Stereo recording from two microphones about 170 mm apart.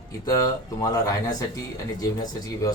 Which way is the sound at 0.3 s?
20° left (ahead or behind).